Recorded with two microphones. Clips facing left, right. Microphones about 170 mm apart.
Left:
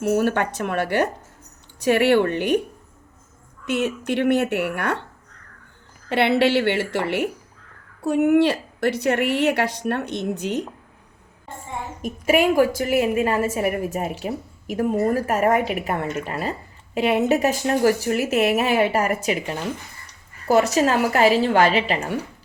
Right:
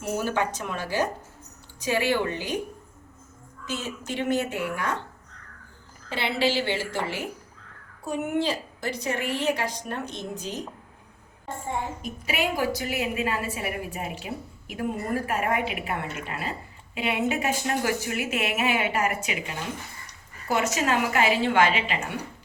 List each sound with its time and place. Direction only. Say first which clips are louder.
0.0 s a woman's voice: left 7 dB; 60° left (ahead or behind)
3.7 s a woman's voice: left 10 dB; 65° left (ahead or behind)
6.1 s a woman's voice: left 8 dB; 65° left (ahead or behind)
12.0 s a woman's voice: left 13 dB; 50° left (ahead or behind)